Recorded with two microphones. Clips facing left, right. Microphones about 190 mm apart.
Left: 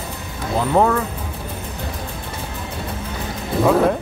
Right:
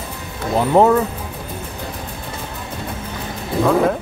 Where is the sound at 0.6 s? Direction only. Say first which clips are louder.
Right 4 dB; 20° right (ahead or behind).